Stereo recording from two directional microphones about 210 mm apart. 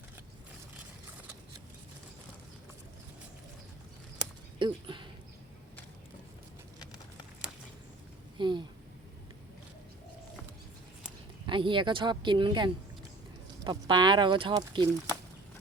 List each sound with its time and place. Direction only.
4.2 s a sound: 20° right (ahead or behind)
8.4 s speech: 20° right (ahead or behind)
11.4 s speech: 25° right (ahead or behind)